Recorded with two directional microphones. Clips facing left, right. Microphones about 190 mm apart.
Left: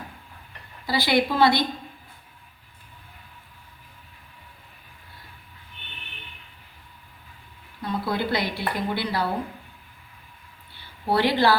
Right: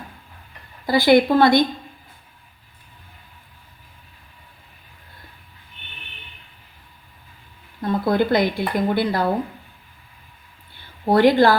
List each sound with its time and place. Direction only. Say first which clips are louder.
0.9 s a woman's voice: right 8 dB; 50° right (ahead or behind)
7.8 s speech: right 7 dB; 50° right (ahead or behind)
10.8 s a sound: right 7 dB; 50° right (ahead or behind)